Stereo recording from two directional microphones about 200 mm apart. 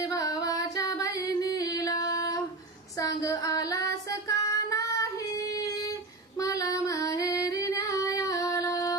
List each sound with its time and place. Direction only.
0.0 s music: 15° left (ahead or behind)
3.0 s female singing: 15° left (ahead or behind)
6.4 s female singing: 15° left (ahead or behind)